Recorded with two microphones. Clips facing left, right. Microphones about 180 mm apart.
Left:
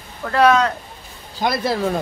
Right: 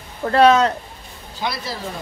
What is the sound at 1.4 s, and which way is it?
Speech, 50° left (ahead or behind).